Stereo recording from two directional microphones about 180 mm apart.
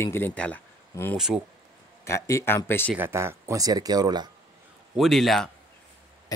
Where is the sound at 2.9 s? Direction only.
10° right (ahead or behind).